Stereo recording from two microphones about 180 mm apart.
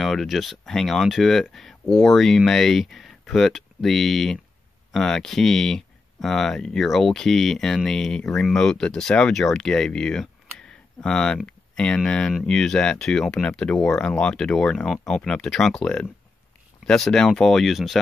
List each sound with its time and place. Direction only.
0.0 s speech: centre (ahead or behind)